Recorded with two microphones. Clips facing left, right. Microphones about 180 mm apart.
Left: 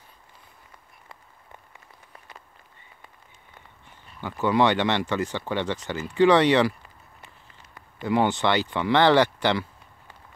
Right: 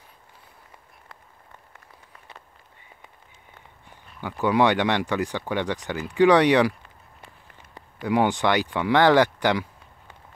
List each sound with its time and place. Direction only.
4.2 s speech: 10° right (ahead or behind)
8.0 s speech: 10° right (ahead or behind)